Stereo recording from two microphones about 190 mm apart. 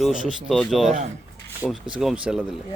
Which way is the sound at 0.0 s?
Centre (ahead or behind).